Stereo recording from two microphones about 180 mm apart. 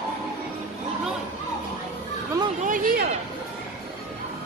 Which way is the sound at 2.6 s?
50° right (ahead or behind).